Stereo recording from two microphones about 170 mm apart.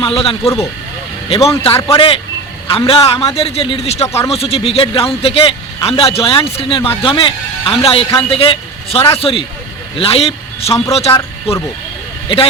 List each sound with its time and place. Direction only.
0.0 s a man's voice: 35° left (ahead or behind)